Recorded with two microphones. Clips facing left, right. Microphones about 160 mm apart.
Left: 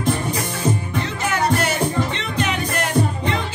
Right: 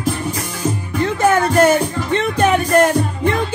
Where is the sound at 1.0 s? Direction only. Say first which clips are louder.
Right 7 dB; 50° right (ahead or behind).